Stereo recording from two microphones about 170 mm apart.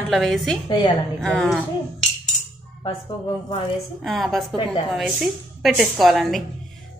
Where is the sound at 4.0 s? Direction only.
Centre (ahead or behind).